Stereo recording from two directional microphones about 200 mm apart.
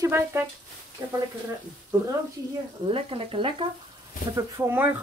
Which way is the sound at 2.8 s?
30° right (ahead or behind).